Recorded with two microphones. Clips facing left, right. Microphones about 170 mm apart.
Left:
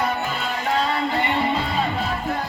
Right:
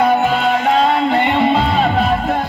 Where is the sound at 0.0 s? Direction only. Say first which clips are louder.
Right 11 dB; 75° right (ahead or behind).